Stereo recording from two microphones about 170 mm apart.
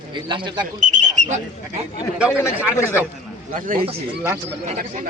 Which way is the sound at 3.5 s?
55° right (ahead or behind).